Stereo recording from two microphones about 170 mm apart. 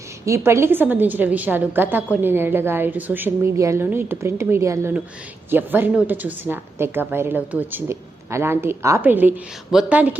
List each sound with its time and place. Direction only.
0.3 s a woman's voice: 15° right (ahead or behind)